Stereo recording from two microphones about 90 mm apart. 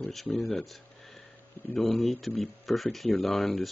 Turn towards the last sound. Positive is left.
turn(degrees=5)  # may be behind; listen again after turning